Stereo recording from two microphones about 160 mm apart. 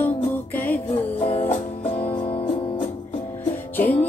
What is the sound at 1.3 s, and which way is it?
Music, 40° left (ahead or behind).